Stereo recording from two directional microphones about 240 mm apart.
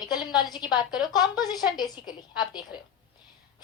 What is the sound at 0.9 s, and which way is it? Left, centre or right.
Speech, centre.